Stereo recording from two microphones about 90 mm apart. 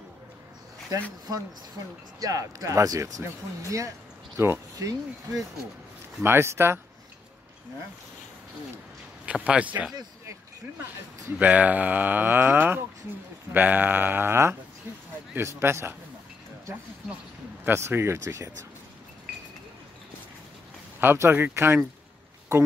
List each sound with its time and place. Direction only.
2.1 s speech: 40° right (ahead or behind)
4.4 s speech: 35° right (ahead or behind)
6.2 s speech: 30° right (ahead or behind)
9.2 s speech: 10° right (ahead or behind)
11.3 s speech: 15° right (ahead or behind)
17.6 s speech: 30° right (ahead or behind)
21.0 s speech: 25° right (ahead or behind)